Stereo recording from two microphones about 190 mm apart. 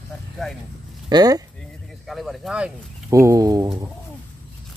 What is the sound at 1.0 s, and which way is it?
Speech, 20° right (ahead or behind).